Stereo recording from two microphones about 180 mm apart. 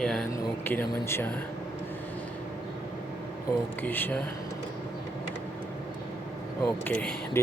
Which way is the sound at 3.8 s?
10° left (ahead or behind).